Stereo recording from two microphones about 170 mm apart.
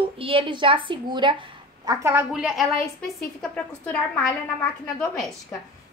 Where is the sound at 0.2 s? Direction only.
30° right (ahead or behind).